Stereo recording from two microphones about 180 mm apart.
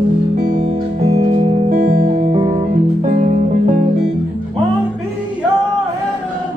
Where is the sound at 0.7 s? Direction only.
35° right (ahead or behind).